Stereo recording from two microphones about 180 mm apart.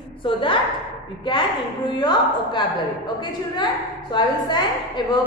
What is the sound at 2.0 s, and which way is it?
Speech, 25° left (ahead or behind).